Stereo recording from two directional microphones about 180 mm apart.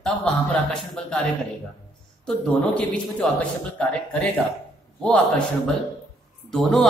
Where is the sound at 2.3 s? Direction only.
5° left (ahead or behind).